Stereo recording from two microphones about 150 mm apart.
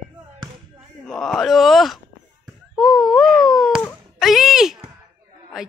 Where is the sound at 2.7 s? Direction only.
5° left (ahead or behind).